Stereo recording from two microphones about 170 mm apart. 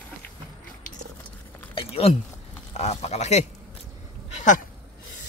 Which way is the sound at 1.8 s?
35° left (ahead or behind).